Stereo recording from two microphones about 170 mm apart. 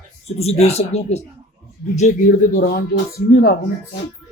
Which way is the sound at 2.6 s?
65° left (ahead or behind).